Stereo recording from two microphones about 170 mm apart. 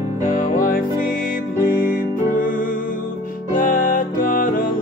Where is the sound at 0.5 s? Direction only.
55° left (ahead or behind).